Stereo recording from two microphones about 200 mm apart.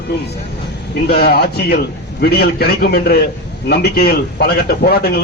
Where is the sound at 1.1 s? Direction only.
50° left (ahead or behind).